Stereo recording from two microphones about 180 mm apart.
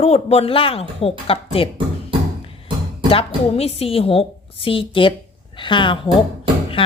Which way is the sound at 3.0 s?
35° left (ahead or behind).